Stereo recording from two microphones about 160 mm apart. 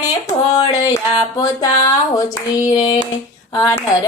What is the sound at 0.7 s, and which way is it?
Speech, 20° left (ahead or behind).